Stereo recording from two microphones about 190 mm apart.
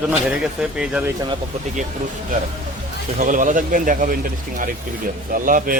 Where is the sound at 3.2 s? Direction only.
45° right (ahead or behind).